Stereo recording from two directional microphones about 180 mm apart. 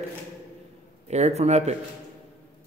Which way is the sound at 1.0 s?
40° right (ahead or behind).